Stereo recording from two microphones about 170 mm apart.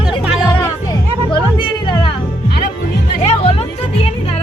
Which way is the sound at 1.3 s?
30° left (ahead or behind).